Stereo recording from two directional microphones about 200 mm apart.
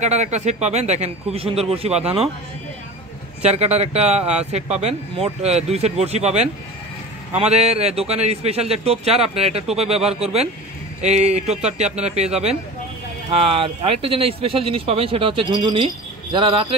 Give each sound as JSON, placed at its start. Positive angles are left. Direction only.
{"t": 0.0, "sound": "a man's voice", "side_deg": -35}
{"t": 3.4, "sound": "a man's voice", "side_deg": -30}